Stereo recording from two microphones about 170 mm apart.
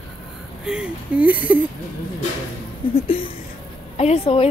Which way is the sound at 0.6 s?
5° right (ahead or behind).